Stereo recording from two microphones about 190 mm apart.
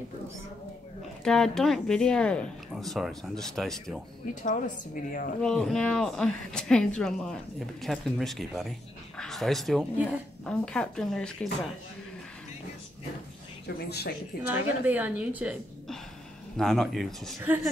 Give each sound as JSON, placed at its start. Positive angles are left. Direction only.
{"t": 1.2, "sound": "speech", "side_deg": 5}
{"t": 4.4, "sound": "a woman's voice", "side_deg": 45}
{"t": 5.4, "sound": "speech", "side_deg": 0}
{"t": 13.7, "sound": "speech", "side_deg": 60}
{"t": 14.4, "sound": "a woman's voice", "side_deg": -10}